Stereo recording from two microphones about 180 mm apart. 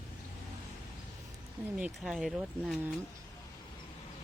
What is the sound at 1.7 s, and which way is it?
Speech, 5° right (ahead or behind).